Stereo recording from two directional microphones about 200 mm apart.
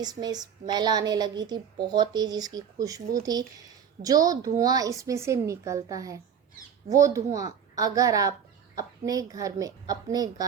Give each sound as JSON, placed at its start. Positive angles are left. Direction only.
{"t": 0.0, "sound": "a woman's voice", "side_deg": -20}
{"t": 4.0, "sound": "speech", "side_deg": -20}